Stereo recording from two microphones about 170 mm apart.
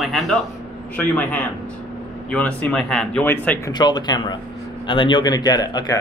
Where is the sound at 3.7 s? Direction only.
25° left (ahead or behind).